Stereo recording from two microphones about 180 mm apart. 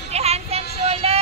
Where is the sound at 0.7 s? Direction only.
35° right (ahead or behind).